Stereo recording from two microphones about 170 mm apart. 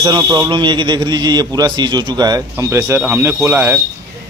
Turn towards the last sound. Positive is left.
turn(degrees=-15)  # may be behind; listen again after turning